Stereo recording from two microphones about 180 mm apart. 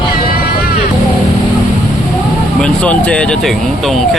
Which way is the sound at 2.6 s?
5° left (ahead or behind).